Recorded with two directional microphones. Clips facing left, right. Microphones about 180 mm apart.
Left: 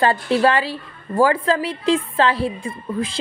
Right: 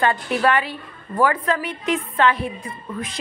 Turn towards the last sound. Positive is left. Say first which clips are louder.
# left 6 dB
turn(degrees=30)  # may be behind; listen again after turning